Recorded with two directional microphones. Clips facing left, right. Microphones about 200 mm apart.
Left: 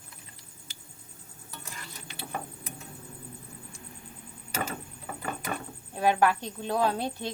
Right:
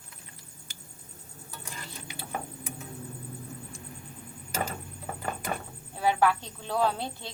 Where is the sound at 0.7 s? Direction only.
50° right (ahead or behind).